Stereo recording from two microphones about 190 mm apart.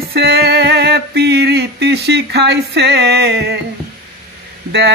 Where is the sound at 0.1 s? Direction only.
55° right (ahead or behind).